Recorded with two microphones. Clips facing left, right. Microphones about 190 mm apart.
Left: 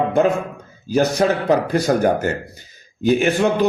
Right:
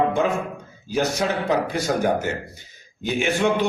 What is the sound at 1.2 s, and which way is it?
Speech, 45° left (ahead or behind).